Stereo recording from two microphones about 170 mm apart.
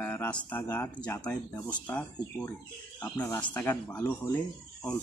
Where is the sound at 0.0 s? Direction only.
10° left (ahead or behind).